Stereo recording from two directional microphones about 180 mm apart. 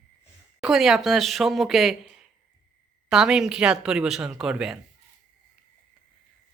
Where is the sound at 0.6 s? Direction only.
Centre (ahead or behind).